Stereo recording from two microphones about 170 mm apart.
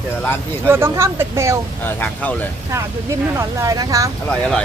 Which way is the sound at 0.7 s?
15° right (ahead or behind).